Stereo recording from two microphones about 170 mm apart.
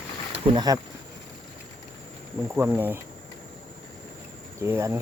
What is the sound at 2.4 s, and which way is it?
Speech, 15° right (ahead or behind).